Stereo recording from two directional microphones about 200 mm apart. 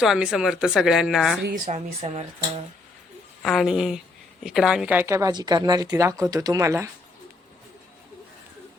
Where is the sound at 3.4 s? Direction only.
Centre (ahead or behind).